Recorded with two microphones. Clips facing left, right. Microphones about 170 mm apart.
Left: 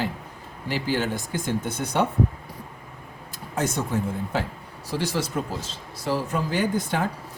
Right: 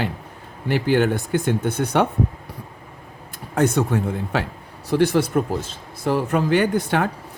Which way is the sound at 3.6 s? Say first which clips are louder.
Right 6 dB; 60° right (ahead or behind).